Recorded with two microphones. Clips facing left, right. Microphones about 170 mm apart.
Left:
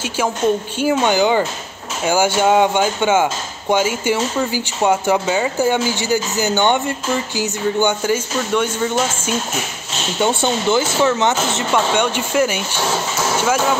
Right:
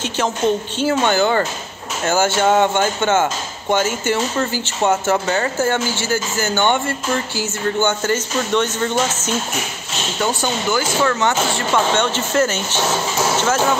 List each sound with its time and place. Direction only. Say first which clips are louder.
0.7 s speech: left 1 dB; 10° left (ahead or behind)
10.2 s speech: left 4 dB; 25° left (ahead or behind)